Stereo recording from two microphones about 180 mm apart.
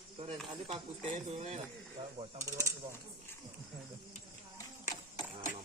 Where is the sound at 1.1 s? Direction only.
40° right (ahead or behind).